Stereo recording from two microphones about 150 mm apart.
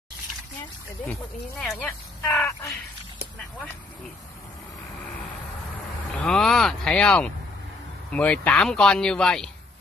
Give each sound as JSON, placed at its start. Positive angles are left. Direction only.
{"t": 1.6, "sound": "speech", "side_deg": 5}
{"t": 2.2, "sound": "speech", "side_deg": 20}
{"t": 3.3, "sound": "a sound", "side_deg": 5}
{"t": 6.2, "sound": "speech", "side_deg": 5}